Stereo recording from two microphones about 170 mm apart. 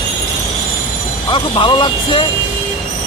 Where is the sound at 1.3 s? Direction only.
30° left (ahead or behind).